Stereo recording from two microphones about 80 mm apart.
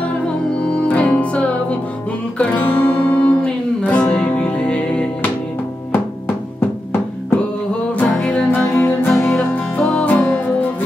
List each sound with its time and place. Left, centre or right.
0.7 s music: centre
6.6 s music: left
8.2 s music: centre
8.5 s music: left